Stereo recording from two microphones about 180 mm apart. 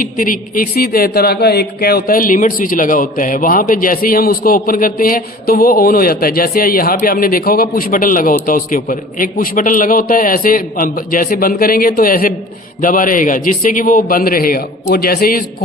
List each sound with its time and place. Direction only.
0.0 s speech: 50° left (ahead or behind)